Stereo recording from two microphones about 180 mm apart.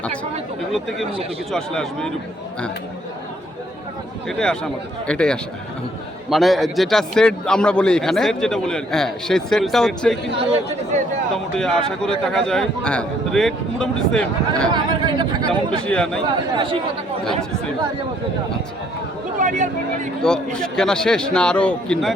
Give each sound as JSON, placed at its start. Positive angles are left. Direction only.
{"t": 0.7, "sound": "a man's voice", "side_deg": 0}
{"t": 4.3, "sound": "a man's voice", "side_deg": 5}
{"t": 11.5, "sound": "a man's voice", "side_deg": 5}
{"t": 14.7, "sound": "speech", "side_deg": -25}
{"t": 15.9, "sound": "a man's voice", "side_deg": 5}
{"t": 16.6, "sound": "speech", "side_deg": -30}
{"t": 19.4, "sound": "a sound", "side_deg": -45}
{"t": 20.2, "sound": "a man's voice", "side_deg": 5}